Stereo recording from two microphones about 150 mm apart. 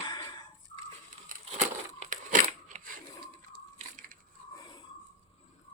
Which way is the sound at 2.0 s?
60° right (ahead or behind).